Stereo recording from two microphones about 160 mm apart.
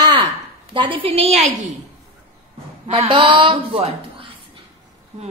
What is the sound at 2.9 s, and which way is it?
A woman's voice, 35° right (ahead or behind).